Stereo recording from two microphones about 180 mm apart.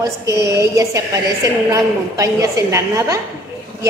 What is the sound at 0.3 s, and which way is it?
A woman's voice, 15° right (ahead or behind).